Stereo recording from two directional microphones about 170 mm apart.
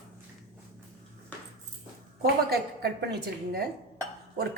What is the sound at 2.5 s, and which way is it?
A woman's voice, 70° right (ahead or behind).